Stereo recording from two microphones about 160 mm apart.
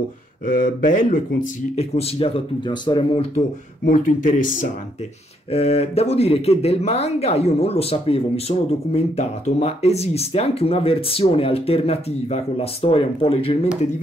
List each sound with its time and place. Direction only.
0.5 s speech: 60° left (ahead or behind)
1.8 s speech: 40° left (ahead or behind)
3.8 s speech: 55° left (ahead or behind)
5.5 s speech: 40° left (ahead or behind)